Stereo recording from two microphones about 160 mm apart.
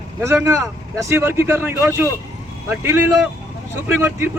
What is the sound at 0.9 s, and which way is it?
Speech, 20° right (ahead or behind).